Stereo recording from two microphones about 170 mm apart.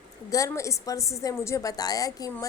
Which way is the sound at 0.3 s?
20° left (ahead or behind).